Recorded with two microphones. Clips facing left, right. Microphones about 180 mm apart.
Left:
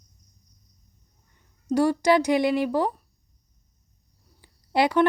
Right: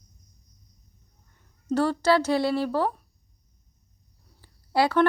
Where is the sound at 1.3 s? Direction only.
10° left (ahead or behind).